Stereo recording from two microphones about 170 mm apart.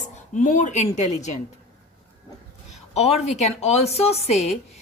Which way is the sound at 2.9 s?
40° left (ahead or behind).